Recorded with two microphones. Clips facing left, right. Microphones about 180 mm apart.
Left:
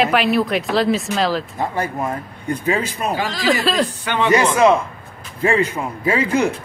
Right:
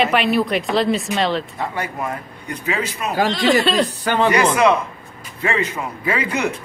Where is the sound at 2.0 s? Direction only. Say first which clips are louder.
Left 3 dB; 30° left (ahead or behind).